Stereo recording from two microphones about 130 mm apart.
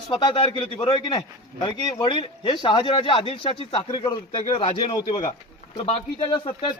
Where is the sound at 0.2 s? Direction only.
35° left (ahead or behind).